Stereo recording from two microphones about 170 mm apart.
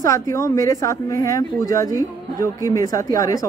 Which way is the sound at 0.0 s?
20° left (ahead or behind).